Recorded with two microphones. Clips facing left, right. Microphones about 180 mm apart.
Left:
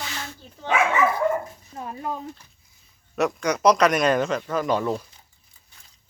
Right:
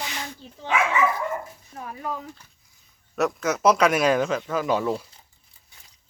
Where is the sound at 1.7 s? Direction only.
25° left (ahead or behind).